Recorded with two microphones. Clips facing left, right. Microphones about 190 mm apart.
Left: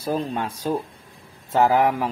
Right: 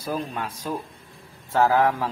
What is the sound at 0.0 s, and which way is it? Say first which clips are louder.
Speech: left 4 dB; 30° left (ahead or behind).